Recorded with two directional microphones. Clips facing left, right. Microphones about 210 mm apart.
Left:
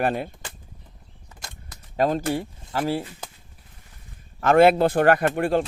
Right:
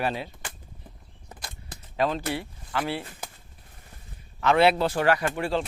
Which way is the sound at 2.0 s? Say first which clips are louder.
Left 4 dB; 45° left (ahead or behind).